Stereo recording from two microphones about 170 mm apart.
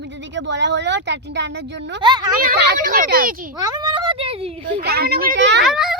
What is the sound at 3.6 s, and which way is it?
Speech, 25° right (ahead or behind).